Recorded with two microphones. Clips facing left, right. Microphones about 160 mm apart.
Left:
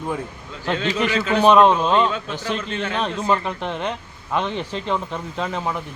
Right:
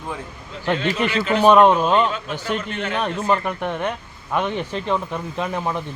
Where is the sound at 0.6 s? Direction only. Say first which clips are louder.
Right 1 dB; 10° right (ahead or behind).